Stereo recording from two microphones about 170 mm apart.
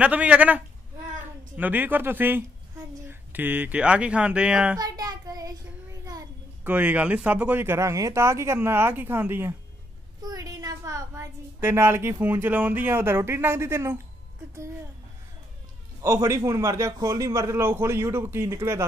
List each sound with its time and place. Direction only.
0.0 s speech: 5° right (ahead or behind)
4.7 s child singing: 20° right (ahead or behind)
6.0 s a sound: 20° right (ahead or behind)
6.7 s a woman's voice: 10° right (ahead or behind)
16.0 s speech: 20° right (ahead or behind)